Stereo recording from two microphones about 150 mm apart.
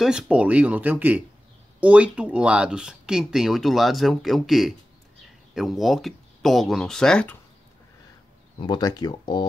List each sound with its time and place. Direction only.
0.0 s speech: 5° right (ahead or behind)
8.5 s speech: 30° left (ahead or behind)